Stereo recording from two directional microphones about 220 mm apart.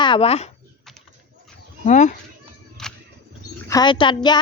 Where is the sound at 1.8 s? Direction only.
35° left (ahead or behind).